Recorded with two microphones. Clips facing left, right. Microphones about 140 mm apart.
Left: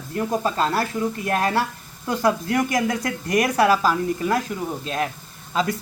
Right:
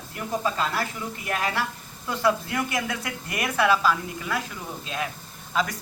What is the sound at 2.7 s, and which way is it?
Speech, 40° left (ahead or behind).